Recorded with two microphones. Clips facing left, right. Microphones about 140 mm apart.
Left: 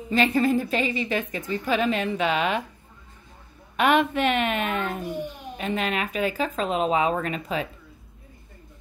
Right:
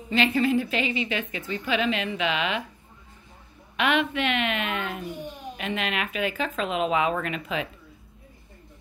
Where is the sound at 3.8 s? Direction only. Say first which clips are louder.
Left 4 dB; 40° left (ahead or behind).